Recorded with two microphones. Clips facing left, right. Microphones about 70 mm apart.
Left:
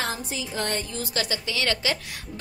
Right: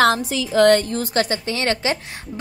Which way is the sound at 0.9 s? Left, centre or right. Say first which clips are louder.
Right 8 dB; right.